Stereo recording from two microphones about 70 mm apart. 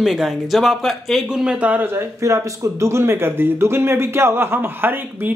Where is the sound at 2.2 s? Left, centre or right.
Right.